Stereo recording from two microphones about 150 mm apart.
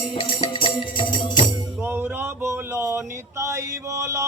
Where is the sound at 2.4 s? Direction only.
15° right (ahead or behind).